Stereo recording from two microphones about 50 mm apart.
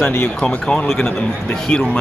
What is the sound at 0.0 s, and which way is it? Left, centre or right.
Speech, left.